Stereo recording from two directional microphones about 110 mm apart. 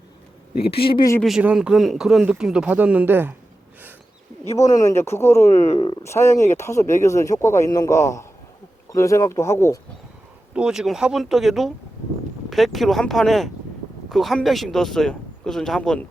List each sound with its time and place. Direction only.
0.6 s a man's voice: 55° left (ahead or behind)
1.4 s speech: 10° right (ahead or behind)
4.7 s speech: 30° left (ahead or behind)
10.5 s speech: 5° right (ahead or behind)